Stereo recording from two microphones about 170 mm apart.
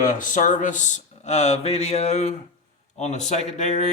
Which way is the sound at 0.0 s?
50° left (ahead or behind).